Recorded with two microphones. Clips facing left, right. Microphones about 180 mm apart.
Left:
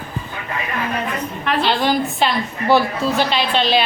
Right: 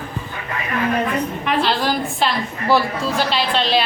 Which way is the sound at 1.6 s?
Centre (ahead or behind).